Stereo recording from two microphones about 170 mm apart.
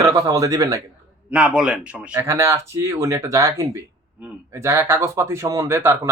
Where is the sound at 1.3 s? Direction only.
5° right (ahead or behind).